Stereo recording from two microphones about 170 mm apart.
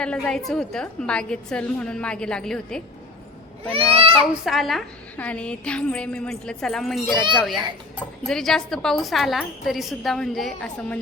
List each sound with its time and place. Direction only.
0.0 s a woman's voice: 5° left (ahead or behind)
3.7 s speech: 35° right (ahead or behind)
4.4 s a woman's voice: centre (ahead or behind)